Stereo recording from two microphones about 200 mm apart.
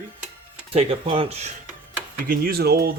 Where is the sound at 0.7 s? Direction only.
30° right (ahead or behind).